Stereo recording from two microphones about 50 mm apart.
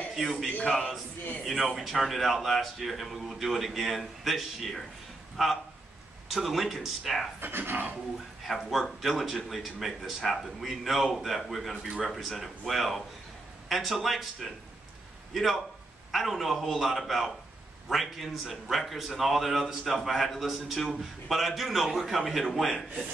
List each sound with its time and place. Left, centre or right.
0.1 s a man's voice: centre
7.3 s speech: right
8.5 s a man's voice: centre